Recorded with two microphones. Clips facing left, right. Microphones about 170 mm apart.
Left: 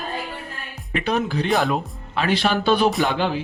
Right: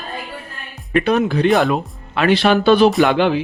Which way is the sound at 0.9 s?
60° right (ahead or behind).